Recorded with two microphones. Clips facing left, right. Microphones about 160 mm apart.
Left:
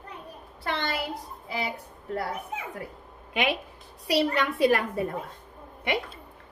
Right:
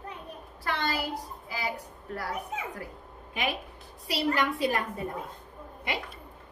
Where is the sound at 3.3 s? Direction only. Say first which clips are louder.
Left 5 dB; 80° left.